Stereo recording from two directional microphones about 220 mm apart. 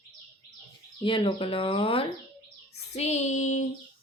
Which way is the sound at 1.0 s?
25° left (ahead or behind).